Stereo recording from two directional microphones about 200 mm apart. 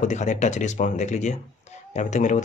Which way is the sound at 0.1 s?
35° left (ahead or behind).